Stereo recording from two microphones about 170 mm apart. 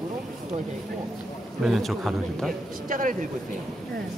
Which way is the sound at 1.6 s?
Centre (ahead or behind).